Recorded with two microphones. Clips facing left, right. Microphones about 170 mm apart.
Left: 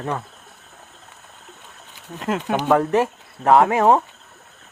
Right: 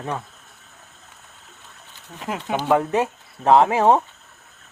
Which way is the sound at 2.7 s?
15° right (ahead or behind).